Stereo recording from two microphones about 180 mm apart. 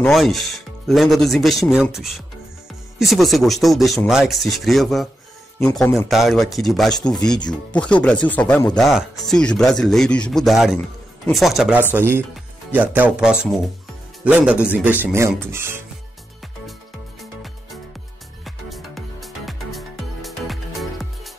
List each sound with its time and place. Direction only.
0.0 s speech: centre (ahead or behind)
3.0 s speech: centre (ahead or behind)
11.9 s speech: 10° right (ahead or behind)
17.2 s music: centre (ahead or behind)